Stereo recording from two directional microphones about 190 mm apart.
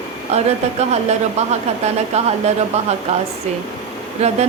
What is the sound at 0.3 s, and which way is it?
Speech, 35° right (ahead or behind).